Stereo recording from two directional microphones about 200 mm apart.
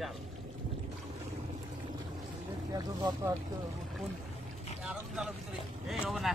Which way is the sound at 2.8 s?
20° right (ahead or behind).